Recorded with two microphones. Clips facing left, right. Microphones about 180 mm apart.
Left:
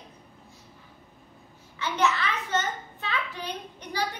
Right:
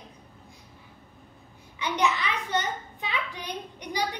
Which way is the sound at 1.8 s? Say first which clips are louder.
Even; 15° right (ahead or behind).